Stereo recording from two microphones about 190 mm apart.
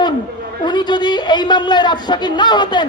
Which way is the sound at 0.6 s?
25° left (ahead or behind).